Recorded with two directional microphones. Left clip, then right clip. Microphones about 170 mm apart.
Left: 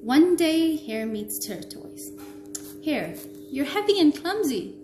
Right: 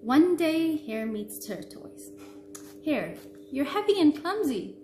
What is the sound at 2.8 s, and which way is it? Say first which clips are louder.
A woman's voice: left 1 dB; 25° right (ahead or behind).